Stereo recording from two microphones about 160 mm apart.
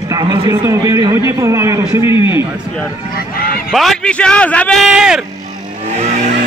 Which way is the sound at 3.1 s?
65° left (ahead or behind).